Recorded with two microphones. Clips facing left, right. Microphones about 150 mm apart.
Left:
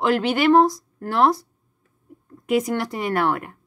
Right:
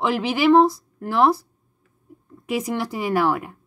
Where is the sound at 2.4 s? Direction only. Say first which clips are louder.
Left 3 dB; centre (ahead or behind).